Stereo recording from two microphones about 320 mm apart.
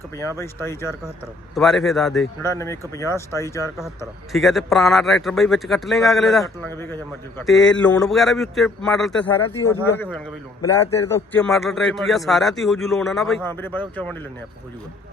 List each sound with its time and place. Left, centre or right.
0.2 s speech: centre